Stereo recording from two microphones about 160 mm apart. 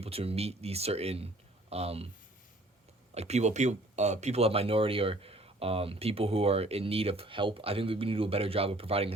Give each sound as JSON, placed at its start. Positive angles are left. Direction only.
{"t": 0.0, "sound": "speech", "side_deg": -40}
{"t": 3.2, "sound": "speech", "side_deg": -45}